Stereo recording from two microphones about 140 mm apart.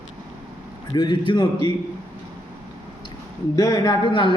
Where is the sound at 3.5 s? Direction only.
25° left (ahead or behind).